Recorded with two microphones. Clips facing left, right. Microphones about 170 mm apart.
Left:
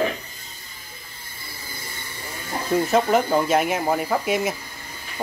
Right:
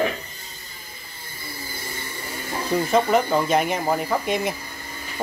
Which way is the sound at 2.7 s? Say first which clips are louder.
Even; 5° left (ahead or behind).